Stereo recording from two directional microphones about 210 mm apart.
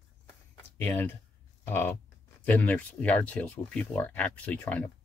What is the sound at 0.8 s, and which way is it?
Speech, 10° left (ahead or behind).